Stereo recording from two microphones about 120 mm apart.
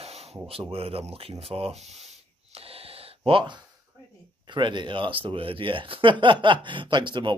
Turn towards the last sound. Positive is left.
turn(degrees=-40)  # may be behind; listen again after turning